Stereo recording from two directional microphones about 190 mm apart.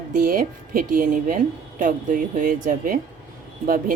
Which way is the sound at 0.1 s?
45° right (ahead or behind).